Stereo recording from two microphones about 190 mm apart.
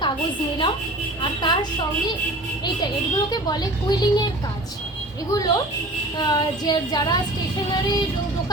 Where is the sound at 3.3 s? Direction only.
20° left (ahead or behind).